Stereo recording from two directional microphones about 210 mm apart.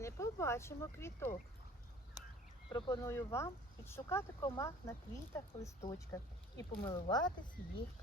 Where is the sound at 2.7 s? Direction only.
20° left (ahead or behind).